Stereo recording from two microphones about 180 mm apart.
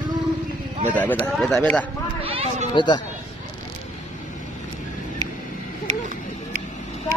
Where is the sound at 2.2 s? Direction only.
35° right (ahead or behind).